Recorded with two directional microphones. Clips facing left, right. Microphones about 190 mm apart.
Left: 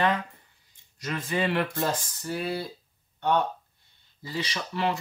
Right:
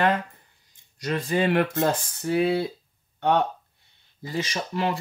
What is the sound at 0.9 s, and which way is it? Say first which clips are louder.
Speech: right 5 dB; 35° right (ahead or behind).